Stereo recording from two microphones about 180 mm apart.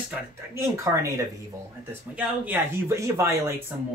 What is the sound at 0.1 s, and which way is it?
Speech, 15° right (ahead or behind).